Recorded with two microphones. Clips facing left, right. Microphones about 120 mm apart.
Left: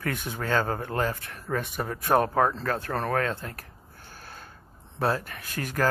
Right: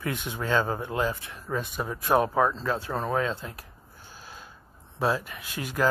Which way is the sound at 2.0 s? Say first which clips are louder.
Even; 50° left (ahead or behind).